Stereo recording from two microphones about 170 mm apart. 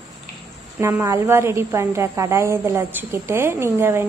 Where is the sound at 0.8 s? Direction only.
15° right (ahead or behind).